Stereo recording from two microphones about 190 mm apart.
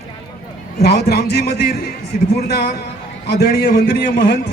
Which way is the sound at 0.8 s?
55° left (ahead or behind).